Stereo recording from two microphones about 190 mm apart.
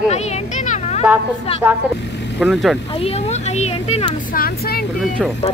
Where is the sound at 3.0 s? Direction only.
35° left (ahead or behind).